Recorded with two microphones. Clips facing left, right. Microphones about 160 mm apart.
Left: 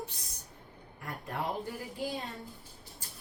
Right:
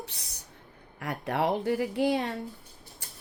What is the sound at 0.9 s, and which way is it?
Speech, 85° right.